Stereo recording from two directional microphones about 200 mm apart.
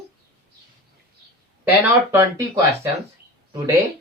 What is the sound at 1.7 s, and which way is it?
Speech, 10° right (ahead or behind).